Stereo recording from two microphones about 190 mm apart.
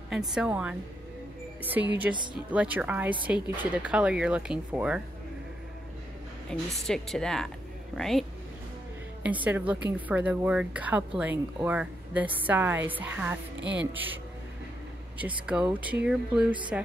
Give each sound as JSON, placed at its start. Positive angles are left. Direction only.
{"t": 0.3, "sound": "a woman's voice", "side_deg": -5}
{"t": 6.5, "sound": "a woman's voice", "side_deg": 5}
{"t": 13.6, "sound": "speech", "side_deg": -70}
{"t": 15.1, "sound": "a woman's voice", "side_deg": -5}